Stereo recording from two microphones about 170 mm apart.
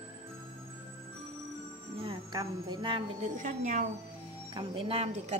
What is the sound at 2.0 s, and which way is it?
Speech, 30° right (ahead or behind).